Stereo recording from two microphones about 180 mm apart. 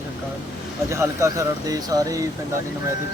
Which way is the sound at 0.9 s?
15° right (ahead or behind).